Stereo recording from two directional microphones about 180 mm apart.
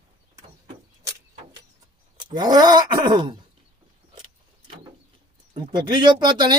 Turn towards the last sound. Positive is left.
turn(degrees=-25)  # may be behind; listen again after turning